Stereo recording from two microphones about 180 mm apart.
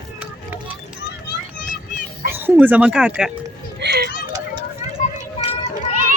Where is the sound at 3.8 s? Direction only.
65° right (ahead or behind).